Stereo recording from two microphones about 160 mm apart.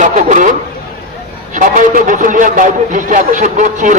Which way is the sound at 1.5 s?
55° right (ahead or behind).